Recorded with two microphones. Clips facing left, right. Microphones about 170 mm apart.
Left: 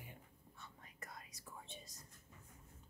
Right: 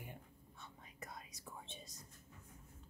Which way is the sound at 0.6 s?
20° right (ahead or behind).